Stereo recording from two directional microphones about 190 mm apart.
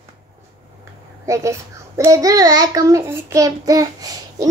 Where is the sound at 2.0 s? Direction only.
15° right (ahead or behind).